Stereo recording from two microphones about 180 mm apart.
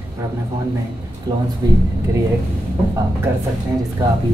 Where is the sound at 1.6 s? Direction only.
20° right (ahead or behind).